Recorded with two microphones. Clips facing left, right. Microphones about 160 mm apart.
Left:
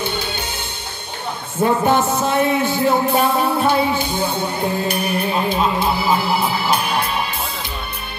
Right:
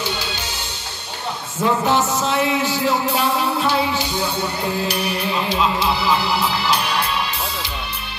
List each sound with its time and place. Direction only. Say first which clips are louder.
0.0 s music: left 2 dB; 55° left (ahead or behind)
1.6 s music: left 2 dB; 55° left (ahead or behind)